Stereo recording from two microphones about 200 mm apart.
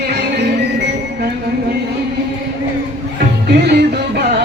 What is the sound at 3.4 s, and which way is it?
Music, 55° right (ahead or behind).